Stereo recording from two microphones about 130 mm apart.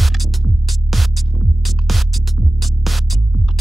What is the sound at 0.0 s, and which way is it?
Music, centre (ahead or behind).